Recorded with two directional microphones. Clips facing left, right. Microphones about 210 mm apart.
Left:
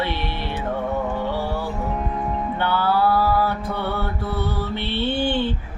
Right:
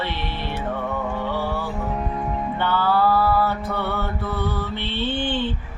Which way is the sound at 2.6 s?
10° left (ahead or behind).